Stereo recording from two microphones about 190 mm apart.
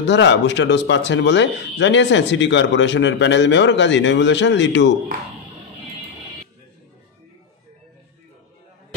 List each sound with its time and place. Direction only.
0.0 s speech: 70° left (ahead or behind)